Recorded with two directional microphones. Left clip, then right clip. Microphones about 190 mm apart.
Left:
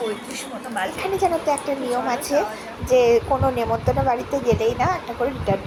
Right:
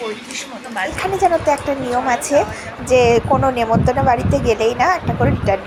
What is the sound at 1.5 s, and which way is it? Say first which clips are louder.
Speech: right 5 dB; 20° right (ahead or behind).